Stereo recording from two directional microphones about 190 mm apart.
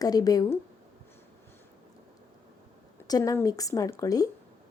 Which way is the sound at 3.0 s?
20° left (ahead or behind).